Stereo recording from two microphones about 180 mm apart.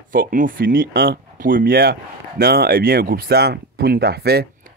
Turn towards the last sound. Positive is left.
turn(degrees=-60)  # may be behind; listen again after turning